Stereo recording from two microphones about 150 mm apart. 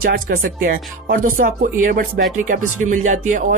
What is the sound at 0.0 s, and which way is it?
A woman's voice, 75° right (ahead or behind).